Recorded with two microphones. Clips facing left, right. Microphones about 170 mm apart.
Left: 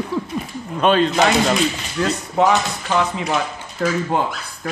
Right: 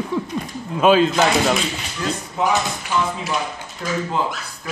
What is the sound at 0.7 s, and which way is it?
Speech, 5° right (ahead or behind).